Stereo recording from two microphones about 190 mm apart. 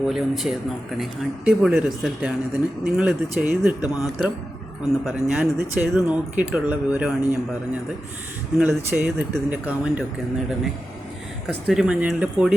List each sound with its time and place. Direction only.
0.0 s speech: centre (ahead or behind)
8.5 s speech: 5° right (ahead or behind)
11.4 s speech: 5° right (ahead or behind)